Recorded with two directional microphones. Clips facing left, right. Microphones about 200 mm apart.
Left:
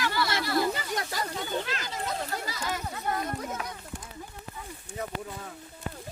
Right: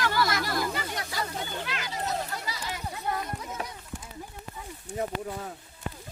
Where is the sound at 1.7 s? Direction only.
45° left (ahead or behind).